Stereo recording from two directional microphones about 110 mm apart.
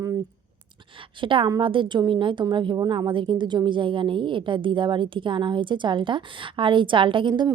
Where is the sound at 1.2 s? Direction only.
50° right (ahead or behind).